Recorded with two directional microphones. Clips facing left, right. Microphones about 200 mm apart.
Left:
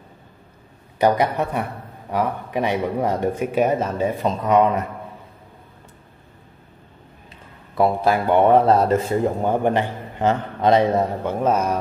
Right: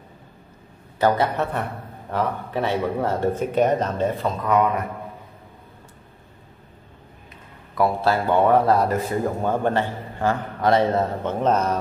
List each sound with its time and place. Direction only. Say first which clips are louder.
0.9 s a man's voice: left 2 dB; 15° left (ahead or behind)
4.4 s a man's voice: left 3 dB; 25° left (ahead or behind)
7.7 s a man's voice: left 2 dB; 20° left (ahead or behind)